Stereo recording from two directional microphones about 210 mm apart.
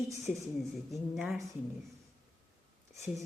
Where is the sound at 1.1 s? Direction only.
Centre (ahead or behind).